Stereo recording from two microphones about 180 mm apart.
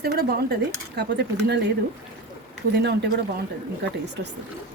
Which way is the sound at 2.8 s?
65° right (ahead or behind).